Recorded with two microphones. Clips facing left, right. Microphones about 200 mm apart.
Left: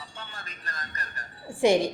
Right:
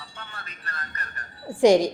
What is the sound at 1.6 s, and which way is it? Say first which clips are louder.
Speech: right 5 dB; 15° right (ahead or behind).